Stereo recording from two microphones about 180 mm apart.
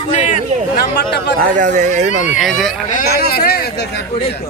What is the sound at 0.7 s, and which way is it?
Speech, 65° left (ahead or behind).